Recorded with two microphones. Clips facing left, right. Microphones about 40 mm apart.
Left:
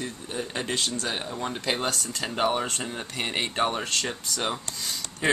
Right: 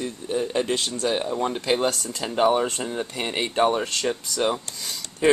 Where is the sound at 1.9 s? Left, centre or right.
Right.